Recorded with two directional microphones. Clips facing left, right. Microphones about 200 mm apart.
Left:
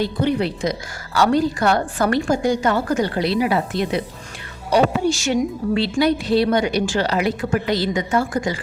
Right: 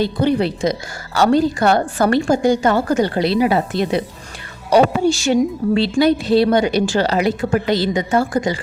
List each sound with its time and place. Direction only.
0.0 s speech: 30° right (ahead or behind)
5.2 s speech: 30° right (ahead or behind)